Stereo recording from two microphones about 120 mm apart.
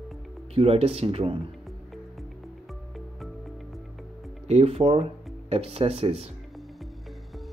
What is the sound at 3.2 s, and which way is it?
Music, centre (ahead or behind).